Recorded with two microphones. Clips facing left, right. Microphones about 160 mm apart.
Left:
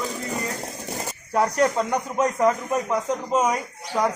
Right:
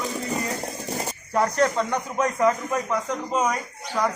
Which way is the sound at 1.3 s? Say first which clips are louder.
Left 1 dB; 10° left (ahead or behind).